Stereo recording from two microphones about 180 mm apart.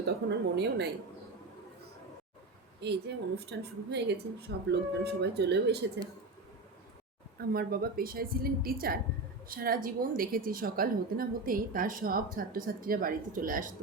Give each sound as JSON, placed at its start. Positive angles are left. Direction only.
{"t": 0.0, "sound": "a woman's voice", "side_deg": -70}
{"t": 2.8, "sound": "a woman's voice", "side_deg": -65}
{"t": 7.3, "sound": "a woman's voice", "side_deg": -55}